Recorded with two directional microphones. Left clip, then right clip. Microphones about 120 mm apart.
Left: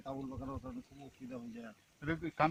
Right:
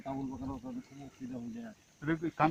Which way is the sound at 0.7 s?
25° left (ahead or behind).